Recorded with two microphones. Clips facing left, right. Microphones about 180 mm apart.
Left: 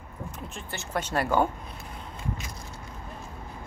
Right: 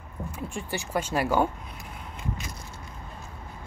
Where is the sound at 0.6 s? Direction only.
15° right (ahead or behind).